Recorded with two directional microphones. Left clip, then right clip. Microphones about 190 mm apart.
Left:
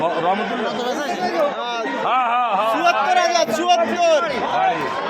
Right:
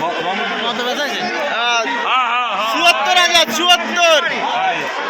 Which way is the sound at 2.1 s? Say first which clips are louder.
Right 1 dB; 50° left (ahead or behind).